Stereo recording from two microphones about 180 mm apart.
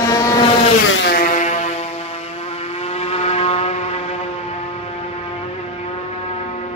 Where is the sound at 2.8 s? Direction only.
35° left (ahead or behind).